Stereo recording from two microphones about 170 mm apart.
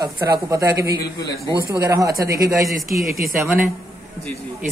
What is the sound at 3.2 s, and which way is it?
Speech, centre (ahead or behind).